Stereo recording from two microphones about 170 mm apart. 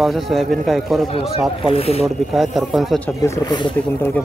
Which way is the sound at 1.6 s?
35° left (ahead or behind).